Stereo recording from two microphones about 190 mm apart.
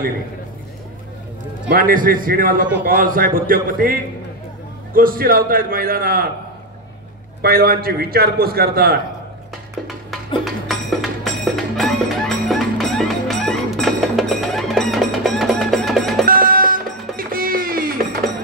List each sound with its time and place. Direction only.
1.7 s a man's voice: 50° right (ahead or behind)
7.4 s a man's voice: 50° right (ahead or behind)
10.4 s music: centre (ahead or behind)
16.3 s music: 45° right (ahead or behind)